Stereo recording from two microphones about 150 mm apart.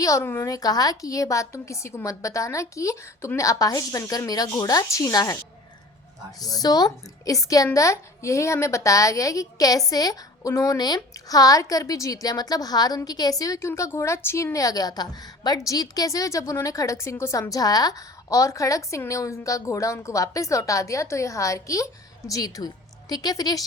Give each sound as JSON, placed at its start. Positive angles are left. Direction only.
{"t": 0.0, "sound": "a woman's voice", "side_deg": 20}
{"t": 6.4, "sound": "a woman's voice", "side_deg": 25}